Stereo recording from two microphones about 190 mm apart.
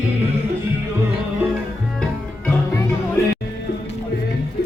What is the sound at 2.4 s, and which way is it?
Music, 10° left (ahead or behind).